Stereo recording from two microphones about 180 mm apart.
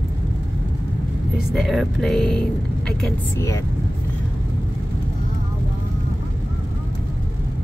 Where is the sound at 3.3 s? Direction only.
15° left (ahead or behind).